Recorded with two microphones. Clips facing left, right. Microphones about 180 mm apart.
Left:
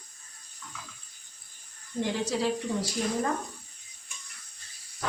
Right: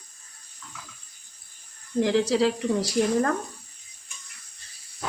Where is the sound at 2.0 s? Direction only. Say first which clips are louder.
Right 7 dB; 90° right.